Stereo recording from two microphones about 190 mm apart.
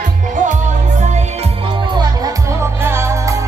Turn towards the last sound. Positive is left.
turn(degrees=-15)  # may be behind; listen again after turning